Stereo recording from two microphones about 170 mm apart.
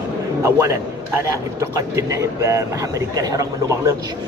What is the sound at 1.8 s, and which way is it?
Speech, 20° right (ahead or behind).